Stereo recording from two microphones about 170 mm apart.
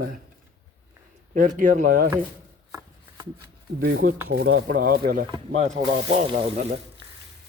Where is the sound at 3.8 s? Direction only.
60° right (ahead or behind).